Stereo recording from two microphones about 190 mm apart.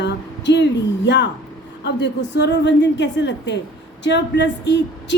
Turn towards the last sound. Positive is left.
turn(degrees=65)  # may be behind; listen again after turning